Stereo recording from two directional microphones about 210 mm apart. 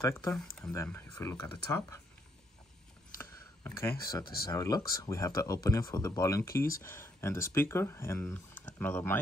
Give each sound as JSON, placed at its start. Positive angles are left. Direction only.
{"t": 0.0, "sound": "speech", "side_deg": 15}
{"t": 3.2, "sound": "a sound", "side_deg": 10}
{"t": 4.0, "sound": "speech", "side_deg": 20}